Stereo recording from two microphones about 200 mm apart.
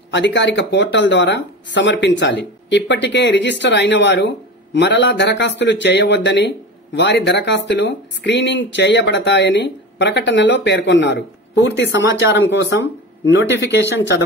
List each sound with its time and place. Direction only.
0.1 s speech: 60° left (ahead or behind)
12.4 s speech: 65° left (ahead or behind)